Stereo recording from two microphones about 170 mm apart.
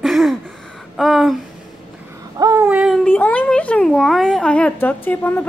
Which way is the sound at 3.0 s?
10° left (ahead or behind).